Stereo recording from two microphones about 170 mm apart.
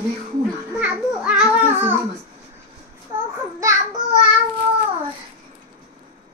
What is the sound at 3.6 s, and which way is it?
Speech, 25° right (ahead or behind).